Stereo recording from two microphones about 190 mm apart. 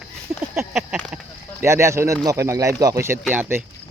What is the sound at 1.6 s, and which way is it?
Speech, 15° right (ahead or behind).